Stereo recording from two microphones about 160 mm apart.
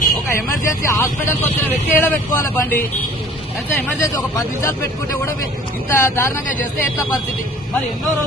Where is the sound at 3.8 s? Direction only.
20° left (ahead or behind).